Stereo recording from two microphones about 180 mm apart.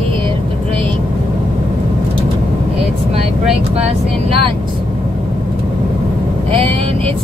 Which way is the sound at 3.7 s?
30° right (ahead or behind).